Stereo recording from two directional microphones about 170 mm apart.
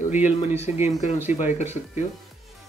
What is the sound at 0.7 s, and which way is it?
Speech, 40° left (ahead or behind).